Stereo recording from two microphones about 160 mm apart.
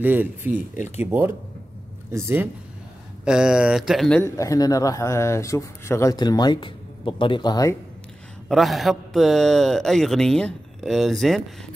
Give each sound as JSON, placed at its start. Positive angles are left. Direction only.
{"t": 0.0, "sound": "speech", "side_deg": -10}
{"t": 3.3, "sound": "speech", "side_deg": -5}
{"t": 4.2, "sound": "speech", "side_deg": 20}
{"t": 8.5, "sound": "speech", "side_deg": 0}